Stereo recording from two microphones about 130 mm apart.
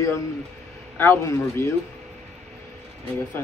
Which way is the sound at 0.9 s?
15° left (ahead or behind).